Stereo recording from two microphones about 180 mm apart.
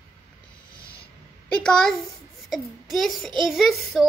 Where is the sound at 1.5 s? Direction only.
5° left (ahead or behind).